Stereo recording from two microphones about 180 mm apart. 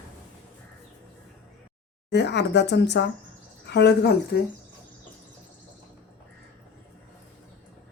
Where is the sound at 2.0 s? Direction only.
70° left (ahead or behind).